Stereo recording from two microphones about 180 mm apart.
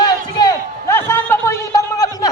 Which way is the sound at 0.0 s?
25° left (ahead or behind).